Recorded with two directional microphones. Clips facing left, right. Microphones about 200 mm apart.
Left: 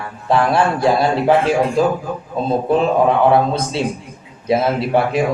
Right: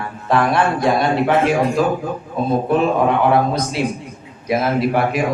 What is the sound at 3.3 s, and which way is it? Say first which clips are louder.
A man's voice: left 1 dB; 30° left (ahead or behind).